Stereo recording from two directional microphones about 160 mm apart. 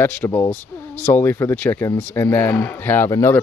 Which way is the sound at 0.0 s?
10° left (ahead or behind).